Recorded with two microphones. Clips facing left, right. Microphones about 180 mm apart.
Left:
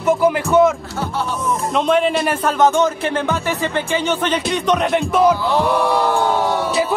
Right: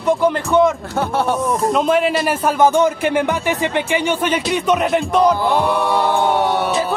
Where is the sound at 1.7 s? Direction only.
5° right (ahead or behind).